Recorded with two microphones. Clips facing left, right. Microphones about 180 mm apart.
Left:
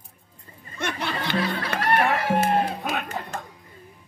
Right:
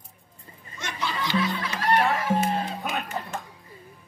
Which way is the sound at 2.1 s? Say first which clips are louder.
Left 3 dB; 70° left (ahead or behind).